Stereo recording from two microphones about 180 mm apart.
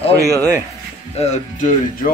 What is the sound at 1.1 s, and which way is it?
Speech, 35° left (ahead or behind).